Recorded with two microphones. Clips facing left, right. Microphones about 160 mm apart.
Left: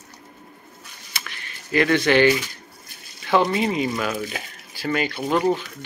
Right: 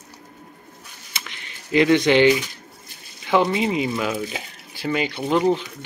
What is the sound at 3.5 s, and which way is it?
Speech, 15° right (ahead or behind).